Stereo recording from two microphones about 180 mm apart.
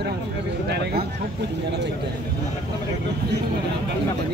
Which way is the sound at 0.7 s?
65° right (ahead or behind).